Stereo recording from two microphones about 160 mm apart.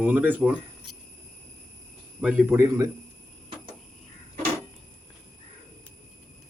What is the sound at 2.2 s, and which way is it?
Speech, 5° right (ahead or behind).